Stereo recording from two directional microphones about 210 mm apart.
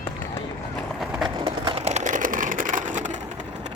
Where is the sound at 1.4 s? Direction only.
25° right (ahead or behind).